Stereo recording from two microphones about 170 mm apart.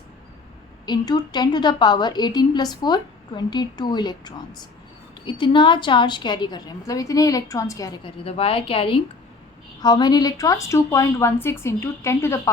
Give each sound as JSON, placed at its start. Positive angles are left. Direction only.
{"t": 0.9, "sound": "a woman's voice", "side_deg": 25}
{"t": 8.0, "sound": "a woman's voice", "side_deg": 35}